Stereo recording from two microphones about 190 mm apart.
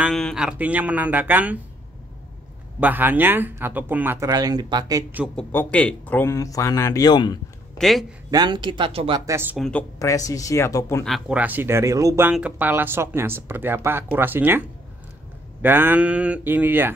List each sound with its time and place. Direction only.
0.0 s speech: centre (ahead or behind)
2.8 s speech: 10° right (ahead or behind)
5.2 s speech: 5° left (ahead or behind); by 7.3 s 20° left (ahead or behind)
7.7 s a sound: centre (ahead or behind)
8.3 s speech: 20° right (ahead or behind)
9.6 s speech: 5° left (ahead or behind)
9.9 s speech: 20° left (ahead or behind)
11.1 s speech: 5° right (ahead or behind)
15.6 s speech: 10° right (ahead or behind)